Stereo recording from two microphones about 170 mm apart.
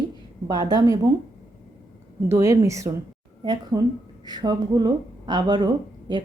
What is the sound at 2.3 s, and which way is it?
A woman's voice, 20° right (ahead or behind).